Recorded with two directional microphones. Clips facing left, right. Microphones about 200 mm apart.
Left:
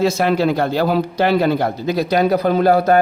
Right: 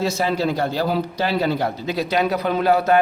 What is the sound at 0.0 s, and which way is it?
A man's voice, 60° left (ahead or behind).